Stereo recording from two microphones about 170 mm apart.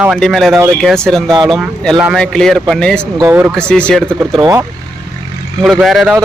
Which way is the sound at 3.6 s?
5° left (ahead or behind).